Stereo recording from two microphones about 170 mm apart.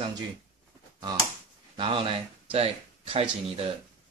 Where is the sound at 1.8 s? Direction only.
30° right (ahead or behind).